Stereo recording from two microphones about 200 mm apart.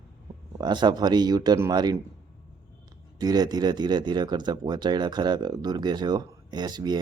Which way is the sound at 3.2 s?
20° right (ahead or behind).